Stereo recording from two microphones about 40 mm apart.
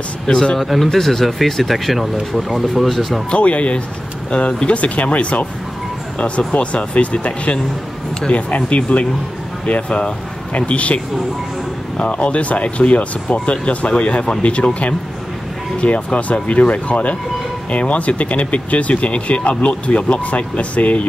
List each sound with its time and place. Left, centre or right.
0.6 s speech: centre
3.3 s speech: left
12.0 s speech: left